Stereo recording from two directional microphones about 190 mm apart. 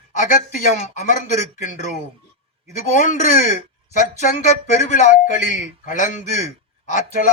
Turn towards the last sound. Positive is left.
turn(degrees=40)  # may be behind; listen again after turning